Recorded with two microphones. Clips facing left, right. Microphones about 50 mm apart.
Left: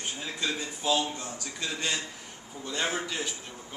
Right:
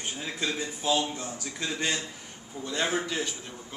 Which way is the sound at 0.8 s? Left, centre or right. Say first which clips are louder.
Even; centre.